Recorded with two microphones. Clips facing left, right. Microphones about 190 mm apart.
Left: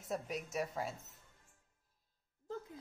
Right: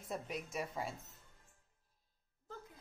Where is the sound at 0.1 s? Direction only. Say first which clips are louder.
Left 2 dB; centre (ahead or behind).